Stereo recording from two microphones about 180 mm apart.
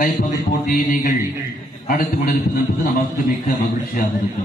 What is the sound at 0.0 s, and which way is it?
A man's voice, 50° left (ahead or behind).